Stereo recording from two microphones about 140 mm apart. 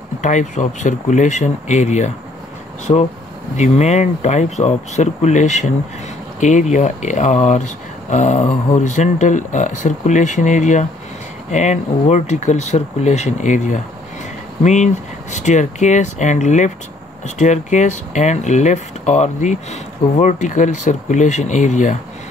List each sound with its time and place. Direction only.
0.2 s speech: 60° left (ahead or behind)
2.9 s speech: 35° left (ahead or behind)
3.5 s speech: 55° left (ahead or behind)